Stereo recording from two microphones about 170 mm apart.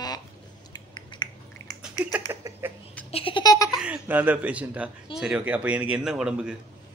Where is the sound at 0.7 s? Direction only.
25° left (ahead or behind).